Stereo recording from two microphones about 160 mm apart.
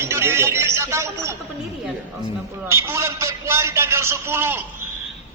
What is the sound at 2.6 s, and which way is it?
A man's voice, 15° right (ahead or behind).